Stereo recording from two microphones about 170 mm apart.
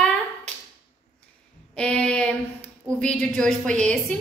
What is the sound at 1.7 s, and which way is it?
A woman's voice, 5° left (ahead or behind).